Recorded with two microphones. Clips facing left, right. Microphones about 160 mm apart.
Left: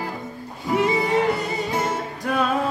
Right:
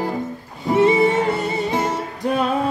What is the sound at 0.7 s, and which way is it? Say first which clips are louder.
Music: right 5 dB; 25° right (ahead or behind).